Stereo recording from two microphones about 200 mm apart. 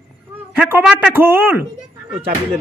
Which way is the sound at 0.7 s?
5° right (ahead or behind).